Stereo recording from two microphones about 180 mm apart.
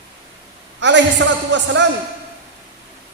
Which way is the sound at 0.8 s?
85° right.